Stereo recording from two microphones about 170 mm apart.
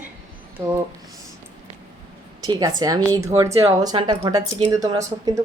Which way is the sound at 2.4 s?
20° right (ahead or behind).